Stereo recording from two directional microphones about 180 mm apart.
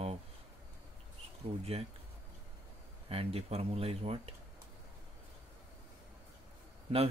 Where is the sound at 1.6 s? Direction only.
35° right (ahead or behind).